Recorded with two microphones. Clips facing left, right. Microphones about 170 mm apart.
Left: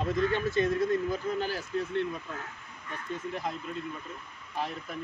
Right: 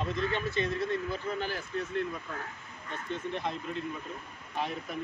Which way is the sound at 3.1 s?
5° left (ahead or behind).